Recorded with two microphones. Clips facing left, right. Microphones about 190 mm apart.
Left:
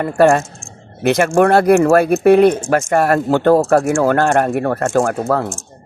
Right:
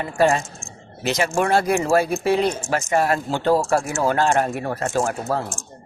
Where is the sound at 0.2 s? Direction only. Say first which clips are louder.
Left 6 dB; 55° left (ahead or behind).